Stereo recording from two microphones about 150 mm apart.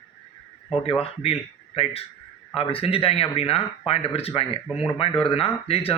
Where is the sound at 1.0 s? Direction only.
40° left (ahead or behind).